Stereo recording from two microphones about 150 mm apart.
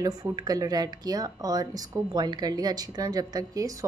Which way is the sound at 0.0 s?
25° right (ahead or behind).